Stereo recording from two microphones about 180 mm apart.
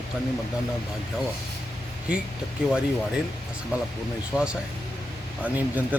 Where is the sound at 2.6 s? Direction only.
5° right (ahead or behind).